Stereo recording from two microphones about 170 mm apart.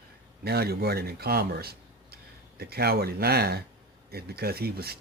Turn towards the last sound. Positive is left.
turn(degrees=-65)  # may be behind; listen again after turning